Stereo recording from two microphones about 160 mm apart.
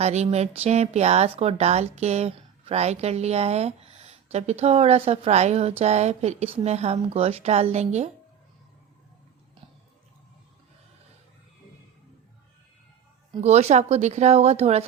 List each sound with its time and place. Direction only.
0.0 s a woman's voice: 45° right (ahead or behind)
13.4 s a woman's voice: 45° right (ahead or behind)